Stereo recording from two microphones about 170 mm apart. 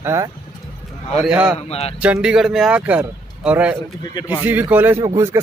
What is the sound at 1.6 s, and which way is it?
Speech, 35° left (ahead or behind).